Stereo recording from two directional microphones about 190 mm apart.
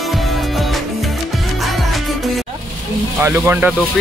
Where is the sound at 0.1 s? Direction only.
Centre (ahead or behind).